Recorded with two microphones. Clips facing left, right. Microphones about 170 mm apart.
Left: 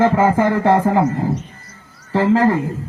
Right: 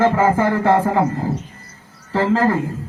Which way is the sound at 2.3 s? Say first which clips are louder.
Left 2 dB; 15° left (ahead or behind).